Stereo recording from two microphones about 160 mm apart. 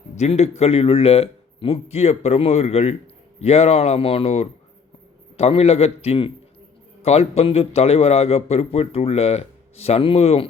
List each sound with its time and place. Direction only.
0.2 s a man's voice: 45° left (ahead or behind)